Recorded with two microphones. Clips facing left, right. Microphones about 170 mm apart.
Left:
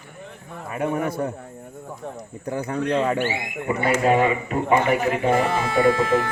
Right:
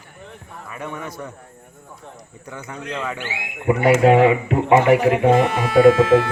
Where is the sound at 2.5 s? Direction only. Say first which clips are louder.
Left 8 dB; 35° left (ahead or behind).